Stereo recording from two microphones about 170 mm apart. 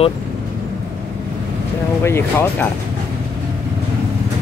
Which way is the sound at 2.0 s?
15° left (ahead or behind).